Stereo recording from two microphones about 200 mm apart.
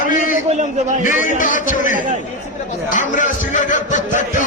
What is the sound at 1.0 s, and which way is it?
A man's voice, 40° left (ahead or behind).